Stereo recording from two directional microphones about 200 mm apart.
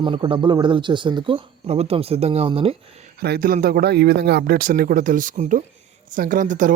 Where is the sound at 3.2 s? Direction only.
50° right (ahead or behind).